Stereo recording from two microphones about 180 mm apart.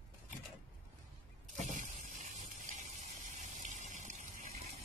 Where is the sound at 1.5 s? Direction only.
45° right (ahead or behind).